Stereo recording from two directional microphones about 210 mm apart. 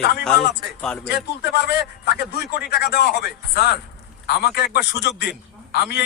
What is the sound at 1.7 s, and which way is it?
A man's voice, 50° left (ahead or behind).